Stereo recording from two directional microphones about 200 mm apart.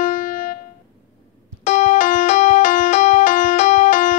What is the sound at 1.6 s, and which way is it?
Music, 35° left (ahead or behind).